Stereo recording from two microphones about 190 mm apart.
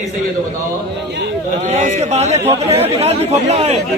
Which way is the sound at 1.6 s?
40° right (ahead or behind).